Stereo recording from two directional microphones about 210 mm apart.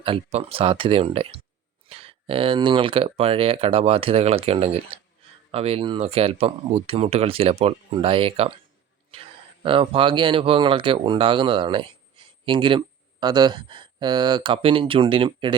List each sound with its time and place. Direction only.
0.0 s speech: 25° right (ahead or behind)
9.6 s speech: 25° right (ahead or behind)